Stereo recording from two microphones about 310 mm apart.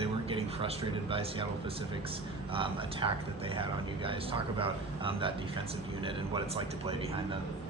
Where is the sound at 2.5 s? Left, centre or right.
Centre.